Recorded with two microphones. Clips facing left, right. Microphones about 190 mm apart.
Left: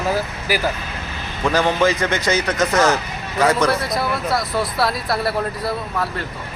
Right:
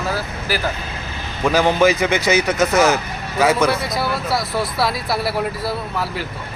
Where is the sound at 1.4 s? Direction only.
10° right (ahead or behind).